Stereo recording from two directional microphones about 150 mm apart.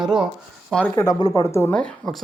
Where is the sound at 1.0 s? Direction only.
25° left (ahead or behind).